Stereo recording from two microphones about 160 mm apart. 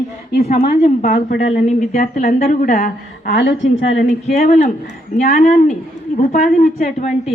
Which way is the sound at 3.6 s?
45° left (ahead or behind).